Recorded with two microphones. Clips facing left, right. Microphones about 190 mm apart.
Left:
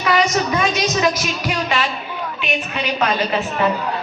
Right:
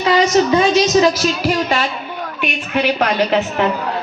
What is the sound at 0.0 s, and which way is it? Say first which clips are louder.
Music: right 5 dB; 25° right (ahead or behind).